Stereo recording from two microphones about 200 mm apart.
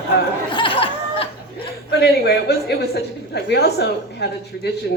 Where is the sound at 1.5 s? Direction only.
55° left (ahead or behind).